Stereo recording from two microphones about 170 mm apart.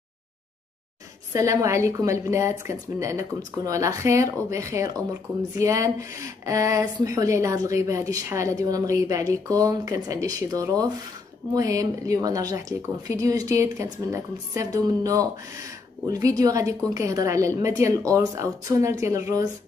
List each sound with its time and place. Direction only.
1.3 s a woman's voice: 20° right (ahead or behind)